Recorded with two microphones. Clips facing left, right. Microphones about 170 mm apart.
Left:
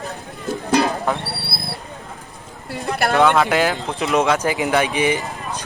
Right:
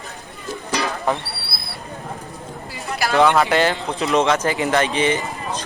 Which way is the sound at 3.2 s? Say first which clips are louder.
Right 1 dB; centre (ahead or behind).